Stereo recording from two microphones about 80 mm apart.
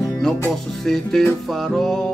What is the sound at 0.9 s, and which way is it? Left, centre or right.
Music, centre.